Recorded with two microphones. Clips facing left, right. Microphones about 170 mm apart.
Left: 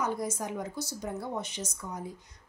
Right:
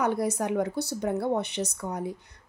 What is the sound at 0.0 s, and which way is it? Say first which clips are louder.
Speech: right 6 dB; 65° right (ahead or behind).